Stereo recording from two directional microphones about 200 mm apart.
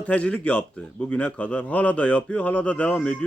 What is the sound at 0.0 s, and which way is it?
A man's voice, 5° left (ahead or behind).